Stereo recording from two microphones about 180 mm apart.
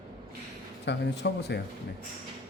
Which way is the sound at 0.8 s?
70° left (ahead or behind).